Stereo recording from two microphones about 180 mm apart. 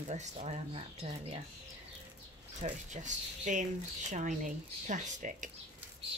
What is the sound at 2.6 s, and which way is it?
Speech, 40° right (ahead or behind).